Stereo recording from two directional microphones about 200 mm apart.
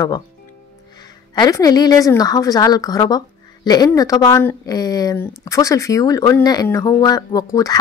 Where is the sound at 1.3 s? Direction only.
15° left (ahead or behind).